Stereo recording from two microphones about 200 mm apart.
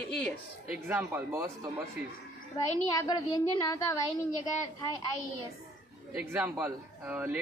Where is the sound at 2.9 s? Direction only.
20° left (ahead or behind).